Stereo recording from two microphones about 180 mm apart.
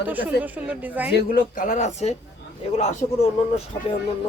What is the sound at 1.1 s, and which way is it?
Speech, 50° left (ahead or behind).